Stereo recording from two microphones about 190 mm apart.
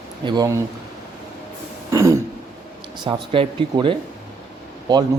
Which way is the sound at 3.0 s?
25° right (ahead or behind).